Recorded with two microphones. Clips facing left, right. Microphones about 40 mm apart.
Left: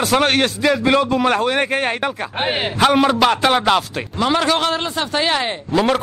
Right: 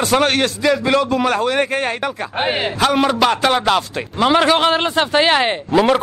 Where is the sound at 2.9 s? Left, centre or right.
Centre.